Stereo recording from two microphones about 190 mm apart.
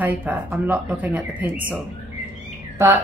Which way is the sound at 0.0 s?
10° right (ahead or behind).